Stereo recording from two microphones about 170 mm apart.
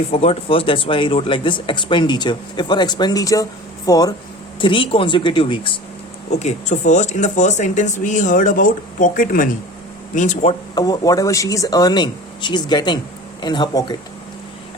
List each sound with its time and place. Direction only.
0.1 s speech: 35° left (ahead or behind)
6.4 s speech: 45° left (ahead or behind)
10.8 s speech: 25° left (ahead or behind)